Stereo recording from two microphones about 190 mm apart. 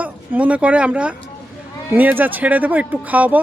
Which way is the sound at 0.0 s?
5° right (ahead or behind).